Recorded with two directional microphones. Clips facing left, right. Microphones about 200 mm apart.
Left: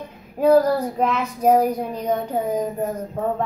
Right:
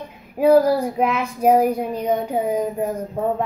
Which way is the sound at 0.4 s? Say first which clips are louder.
Right 1 dB; 10° right (ahead or behind).